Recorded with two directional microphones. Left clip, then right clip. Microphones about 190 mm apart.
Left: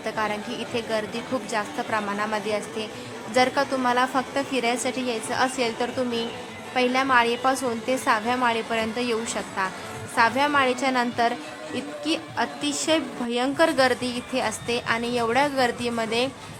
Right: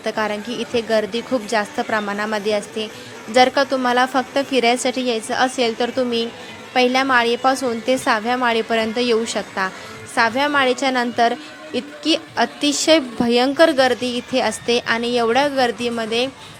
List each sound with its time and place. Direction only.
0.0 s a woman's voice: 20° right (ahead or behind)